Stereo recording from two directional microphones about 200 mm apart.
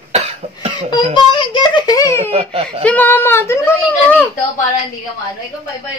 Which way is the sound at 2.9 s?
10° left (ahead or behind).